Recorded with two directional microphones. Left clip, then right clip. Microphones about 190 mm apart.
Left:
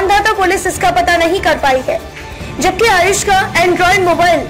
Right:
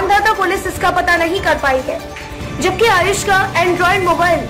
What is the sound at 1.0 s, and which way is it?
A woman's voice, 15° left (ahead or behind).